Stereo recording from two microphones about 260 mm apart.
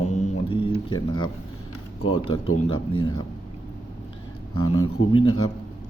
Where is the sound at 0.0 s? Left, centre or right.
Left.